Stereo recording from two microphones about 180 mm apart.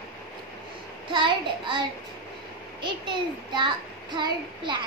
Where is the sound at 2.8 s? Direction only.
25° right (ahead or behind).